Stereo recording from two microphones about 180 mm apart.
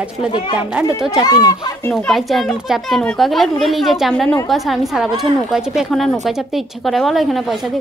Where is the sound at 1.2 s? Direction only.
25° left (ahead or behind).